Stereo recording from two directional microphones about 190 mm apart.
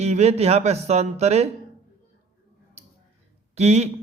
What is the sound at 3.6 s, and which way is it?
Speech, 35° right (ahead or behind).